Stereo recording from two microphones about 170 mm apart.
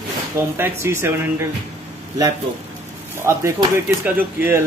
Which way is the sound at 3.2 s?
15° right (ahead or behind).